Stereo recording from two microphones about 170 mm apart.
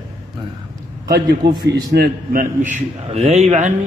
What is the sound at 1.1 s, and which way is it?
A man's voice, 75° right (ahead or behind).